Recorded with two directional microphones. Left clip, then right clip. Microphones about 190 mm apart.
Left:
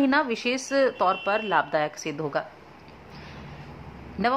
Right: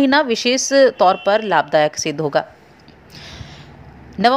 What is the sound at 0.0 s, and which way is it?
A woman's voice, 25° right (ahead or behind).